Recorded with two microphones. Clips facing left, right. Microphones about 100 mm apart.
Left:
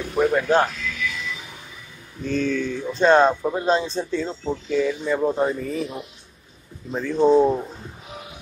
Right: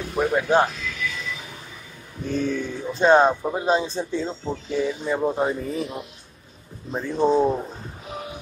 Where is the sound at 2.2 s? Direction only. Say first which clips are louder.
Left 2 dB; 15° right (ahead or behind).